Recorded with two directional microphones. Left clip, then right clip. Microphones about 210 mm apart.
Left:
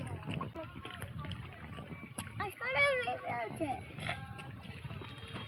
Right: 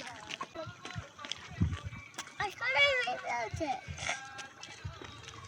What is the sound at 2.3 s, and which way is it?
Children playing, 35° left (ahead or behind).